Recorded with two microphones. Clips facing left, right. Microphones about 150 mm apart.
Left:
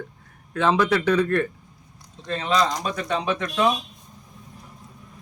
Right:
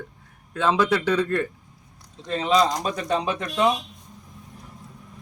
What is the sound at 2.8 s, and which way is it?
Speech, 35° right (ahead or behind).